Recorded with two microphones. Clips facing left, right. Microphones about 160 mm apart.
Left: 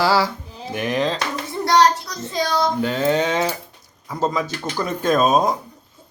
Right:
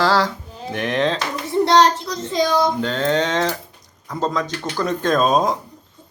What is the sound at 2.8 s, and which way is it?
Mantra, 10° left (ahead or behind).